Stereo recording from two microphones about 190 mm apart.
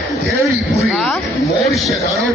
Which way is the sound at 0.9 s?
5° left (ahead or behind).